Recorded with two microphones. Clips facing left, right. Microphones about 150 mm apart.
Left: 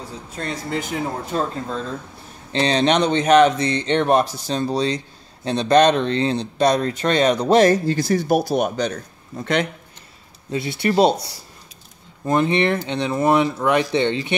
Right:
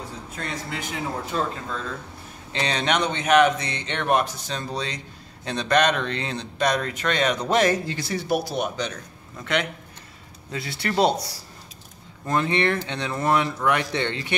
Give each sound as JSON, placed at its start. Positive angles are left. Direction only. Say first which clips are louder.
{"t": 0.4, "sound": "speech", "louder": "left 6 dB", "side_deg": 35}
{"t": 2.5, "sound": "speech", "louder": "left 7 dB", "side_deg": 30}
{"t": 10.5, "sound": "speech", "louder": "left 7 dB", "side_deg": 25}
{"t": 12.3, "sound": "speech", "louder": "left 4 dB", "side_deg": 20}